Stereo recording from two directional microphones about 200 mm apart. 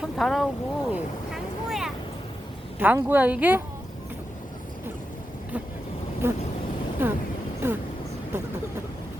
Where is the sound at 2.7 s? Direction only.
10° right (ahead or behind).